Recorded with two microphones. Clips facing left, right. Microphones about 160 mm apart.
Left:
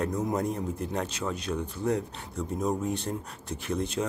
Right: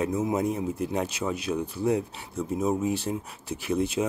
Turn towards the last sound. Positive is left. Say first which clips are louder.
# right 4 dB
turn(degrees=-5)  # may be behind; listen again after turning